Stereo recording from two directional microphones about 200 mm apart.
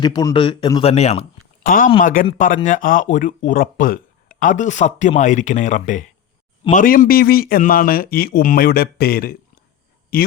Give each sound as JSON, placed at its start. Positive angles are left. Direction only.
{"t": 0.0, "sound": "a man's voice", "side_deg": 20}
{"t": 1.6, "sound": "a man's voice", "side_deg": 40}